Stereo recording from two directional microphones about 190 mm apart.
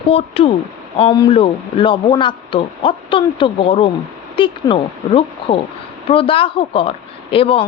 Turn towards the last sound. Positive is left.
turn(degrees=30)  # may be behind; listen again after turning